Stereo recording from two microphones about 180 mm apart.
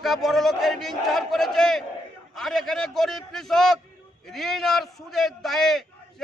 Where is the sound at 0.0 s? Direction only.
Centre (ahead or behind).